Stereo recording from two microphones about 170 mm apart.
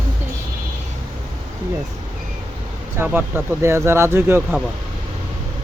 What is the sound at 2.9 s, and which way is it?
Speech, 10° right (ahead or behind).